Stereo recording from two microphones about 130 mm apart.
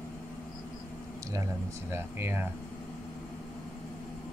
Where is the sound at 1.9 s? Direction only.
15° right (ahead or behind).